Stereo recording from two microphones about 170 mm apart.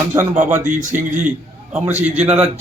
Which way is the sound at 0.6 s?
45° right (ahead or behind).